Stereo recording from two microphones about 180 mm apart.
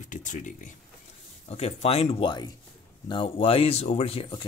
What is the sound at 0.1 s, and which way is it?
Speech, 45° left (ahead or behind).